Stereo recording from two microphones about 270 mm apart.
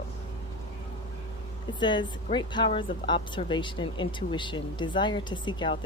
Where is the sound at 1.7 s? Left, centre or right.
Centre.